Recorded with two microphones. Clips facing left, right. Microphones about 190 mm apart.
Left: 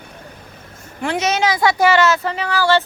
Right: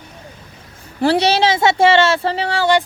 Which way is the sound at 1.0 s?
35° right (ahead or behind).